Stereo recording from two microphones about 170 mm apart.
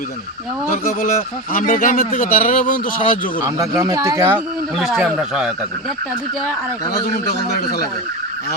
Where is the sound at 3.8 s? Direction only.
20° right (ahead or behind).